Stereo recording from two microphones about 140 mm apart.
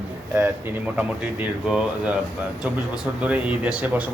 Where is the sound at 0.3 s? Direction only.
15° right (ahead or behind).